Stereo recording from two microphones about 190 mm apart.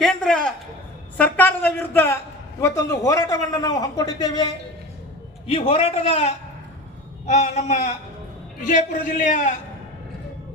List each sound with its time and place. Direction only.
0.0 s a man's voice: 5° left (ahead or behind)
1.1 s a sound: 10° left (ahead or behind)
2.9 s a man's voice: 15° left (ahead or behind); by 9.6 s 40° left (ahead or behind)